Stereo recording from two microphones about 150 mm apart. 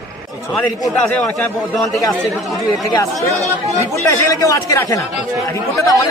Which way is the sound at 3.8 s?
20° left (ahead or behind).